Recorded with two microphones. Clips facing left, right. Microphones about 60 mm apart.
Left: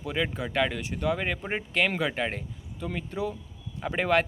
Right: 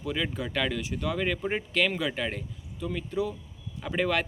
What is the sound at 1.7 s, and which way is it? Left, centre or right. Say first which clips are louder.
Speech: left 3 dB; left.